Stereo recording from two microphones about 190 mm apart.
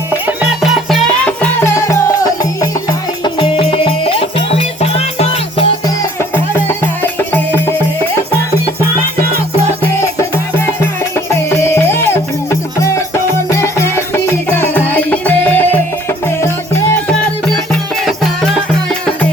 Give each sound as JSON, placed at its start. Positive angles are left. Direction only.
{"t": 0.7, "sound": "music", "side_deg": 0}
{"t": 3.2, "sound": "music", "side_deg": 25}
{"t": 6.0, "sound": "music", "side_deg": 15}
{"t": 11.5, "sound": "music", "side_deg": 15}